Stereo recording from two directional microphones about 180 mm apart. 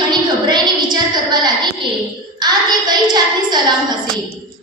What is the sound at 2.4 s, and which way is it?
Hands, 20° right (ahead or behind).